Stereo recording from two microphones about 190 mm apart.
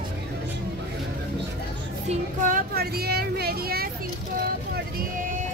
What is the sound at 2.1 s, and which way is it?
Speech, 45° right (ahead or behind).